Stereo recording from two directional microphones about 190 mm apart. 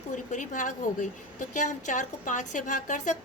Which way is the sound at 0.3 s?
40° left (ahead or behind).